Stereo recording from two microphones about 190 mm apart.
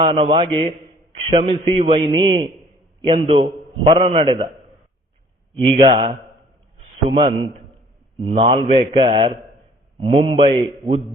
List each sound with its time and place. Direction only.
0.0 s a man's voice: 30° right (ahead or behind)
5.5 s a man's voice: 30° right (ahead or behind)
8.4 s a man's voice: 30° right (ahead or behind)